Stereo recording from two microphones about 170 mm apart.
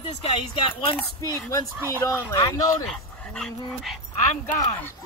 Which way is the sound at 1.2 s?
20° left (ahead or behind).